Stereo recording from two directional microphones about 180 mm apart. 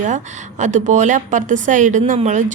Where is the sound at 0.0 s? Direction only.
40° right (ahead or behind).